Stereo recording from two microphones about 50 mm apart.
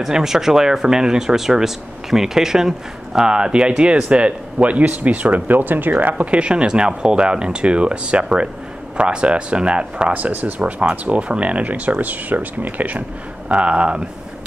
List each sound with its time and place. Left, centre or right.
0.0 s speech: centre; by 6.2 s right
6.3 s speech: right
10.1 s speech: right